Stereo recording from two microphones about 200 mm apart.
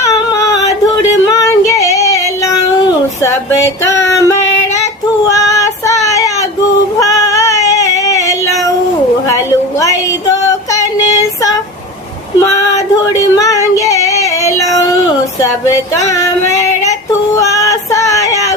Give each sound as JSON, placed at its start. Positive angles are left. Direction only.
{"t": 0.0, "sound": "singing", "side_deg": 15}
{"t": 1.4, "sound": "female singing", "side_deg": 15}
{"t": 2.4, "sound": "a sound", "side_deg": 15}
{"t": 3.8, "sound": "music", "side_deg": 15}
{"t": 5.3, "sound": "child singing", "side_deg": 15}
{"t": 7.0, "sound": "female singing", "side_deg": 15}
{"t": 9.3, "sound": "a sound", "side_deg": 15}
{"t": 12.4, "sound": "female singing", "side_deg": 15}
{"t": 16.0, "sound": "female singing", "side_deg": 15}